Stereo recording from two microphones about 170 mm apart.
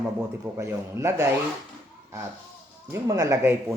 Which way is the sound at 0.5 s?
15° right (ahead or behind).